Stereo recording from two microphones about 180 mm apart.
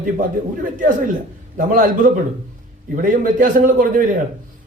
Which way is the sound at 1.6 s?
50° right (ahead or behind).